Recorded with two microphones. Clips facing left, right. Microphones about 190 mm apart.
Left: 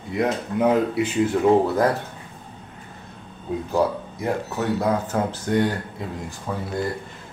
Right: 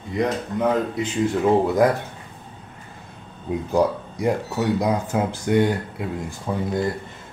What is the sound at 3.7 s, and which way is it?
Speech, 15° right (ahead or behind).